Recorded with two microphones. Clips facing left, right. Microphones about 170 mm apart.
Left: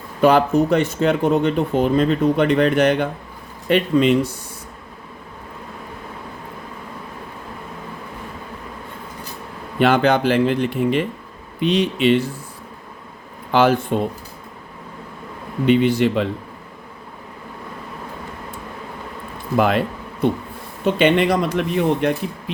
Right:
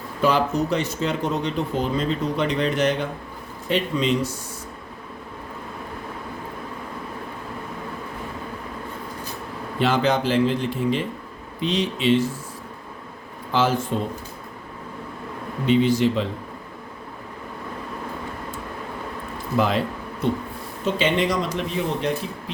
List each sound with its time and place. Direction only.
0.2 s speech: 60° left (ahead or behind)
9.7 s speech: 60° left (ahead or behind)
13.5 s speech: 65° left (ahead or behind)
15.6 s speech: 60° left (ahead or behind)
19.5 s speech: 60° left (ahead or behind)
20.8 s speech: 60° left (ahead or behind)